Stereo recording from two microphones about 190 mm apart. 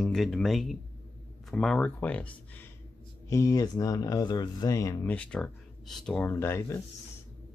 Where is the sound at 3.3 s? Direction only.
15° left (ahead or behind).